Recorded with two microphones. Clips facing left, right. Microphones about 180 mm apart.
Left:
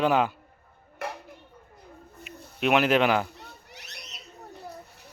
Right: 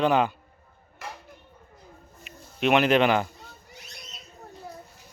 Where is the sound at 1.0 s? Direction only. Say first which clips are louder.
Left 5 dB; 60° left (ahead or behind).